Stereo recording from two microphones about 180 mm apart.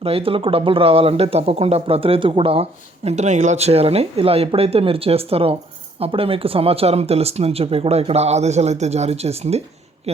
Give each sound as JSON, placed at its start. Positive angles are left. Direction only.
{"t": 0.0, "sound": "speech", "side_deg": -30}